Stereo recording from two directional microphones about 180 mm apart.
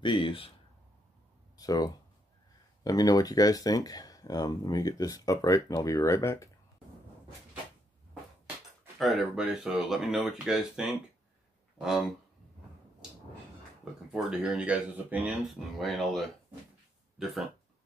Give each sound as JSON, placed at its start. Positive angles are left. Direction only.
{"t": 0.0, "sound": "speech", "side_deg": 30}
{"t": 1.6, "sound": "speech", "side_deg": 20}
{"t": 8.9, "sound": "speech", "side_deg": 0}
{"t": 14.1, "sound": "speech", "side_deg": -5}